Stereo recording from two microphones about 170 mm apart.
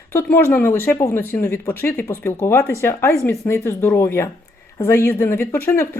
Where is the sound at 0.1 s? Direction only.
10° left (ahead or behind).